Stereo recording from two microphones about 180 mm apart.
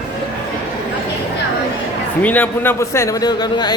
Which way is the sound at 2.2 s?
10° left (ahead or behind).